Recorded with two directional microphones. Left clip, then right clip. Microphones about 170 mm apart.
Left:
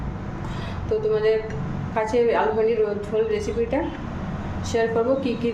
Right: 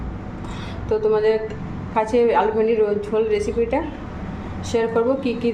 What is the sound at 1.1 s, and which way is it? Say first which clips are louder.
A woman's voice: right 1 dB; 25° right (ahead or behind).